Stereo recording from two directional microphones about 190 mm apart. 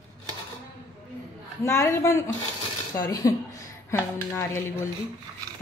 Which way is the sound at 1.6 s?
15° left (ahead or behind).